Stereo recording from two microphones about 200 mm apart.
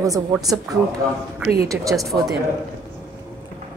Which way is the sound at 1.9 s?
Centre (ahead or behind).